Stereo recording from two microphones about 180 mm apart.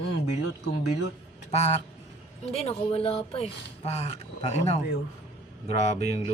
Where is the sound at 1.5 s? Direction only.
35° left (ahead or behind).